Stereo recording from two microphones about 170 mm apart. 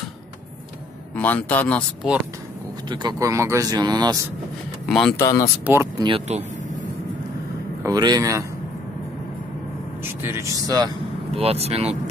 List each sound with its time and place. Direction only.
1.1 s a man's voice: 10° left (ahead or behind)
2.9 s speech: 25° right (ahead or behind)
4.8 s speech: centre (ahead or behind)
5.1 s a man's voice: 15° left (ahead or behind)
5.7 s speech: 15° right (ahead or behind)
6.0 s speech: 35° right (ahead or behind)
7.8 s speech: 25° right (ahead or behind)
10.2 s speech: 15° right (ahead or behind)
11.3 s speech: 35° right (ahead or behind)